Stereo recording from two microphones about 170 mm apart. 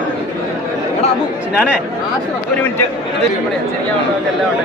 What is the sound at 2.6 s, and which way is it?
Speech, 10° left (ahead or behind).